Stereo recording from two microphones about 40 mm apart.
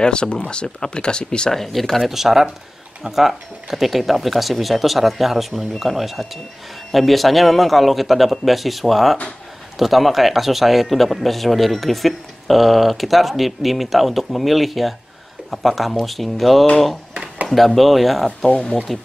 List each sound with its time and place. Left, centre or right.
0.0 s speech: left
1.5 s speech: centre
2.0 s speech: centre